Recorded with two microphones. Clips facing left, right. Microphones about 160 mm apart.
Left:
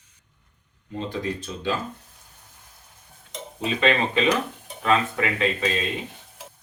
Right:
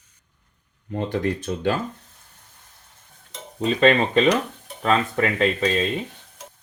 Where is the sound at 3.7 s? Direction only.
40° right (ahead or behind).